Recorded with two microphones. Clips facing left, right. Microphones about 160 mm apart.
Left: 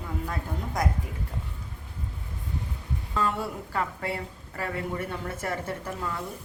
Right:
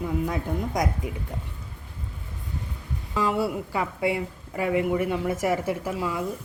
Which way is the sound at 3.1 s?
10° right (ahead or behind).